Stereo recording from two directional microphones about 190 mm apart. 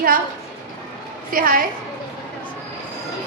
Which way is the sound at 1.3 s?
50° right (ahead or behind).